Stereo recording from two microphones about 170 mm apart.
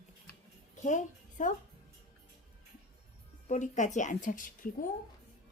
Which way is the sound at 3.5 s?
45° left (ahead or behind).